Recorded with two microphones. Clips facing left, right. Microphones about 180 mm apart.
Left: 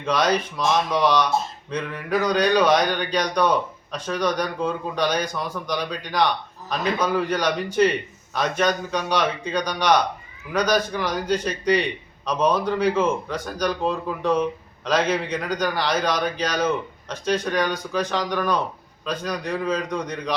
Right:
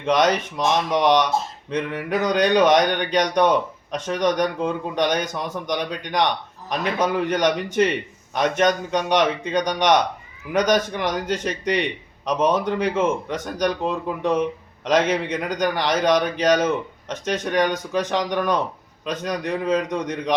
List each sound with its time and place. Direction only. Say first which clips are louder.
0.0 s a man's voice: right 2 dB; 20° right (ahead or behind)